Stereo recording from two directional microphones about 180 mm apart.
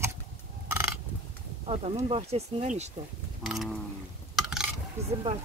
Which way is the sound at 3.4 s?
Centre (ahead or behind).